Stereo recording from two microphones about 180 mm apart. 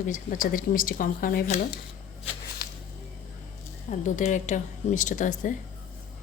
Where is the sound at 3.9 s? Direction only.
45° left (ahead or behind).